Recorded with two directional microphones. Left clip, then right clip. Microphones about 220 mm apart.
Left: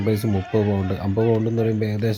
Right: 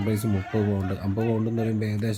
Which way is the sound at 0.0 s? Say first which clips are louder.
Left 5 dB; 15° left (ahead or behind).